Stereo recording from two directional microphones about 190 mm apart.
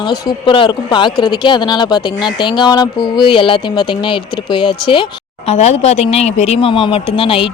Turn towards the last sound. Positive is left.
turn(degrees=30)  # may be behind; listen again after turning